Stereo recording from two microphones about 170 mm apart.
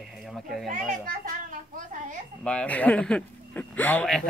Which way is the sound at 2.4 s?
5° left (ahead or behind).